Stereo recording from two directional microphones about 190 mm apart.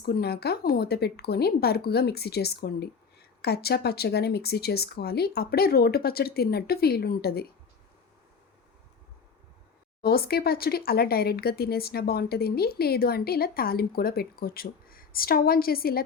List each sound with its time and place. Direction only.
0.0 s speech: 55° left (ahead or behind)
10.0 s speech: 55° left (ahead or behind)